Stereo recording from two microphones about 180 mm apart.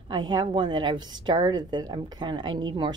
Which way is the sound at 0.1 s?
25° right (ahead or behind).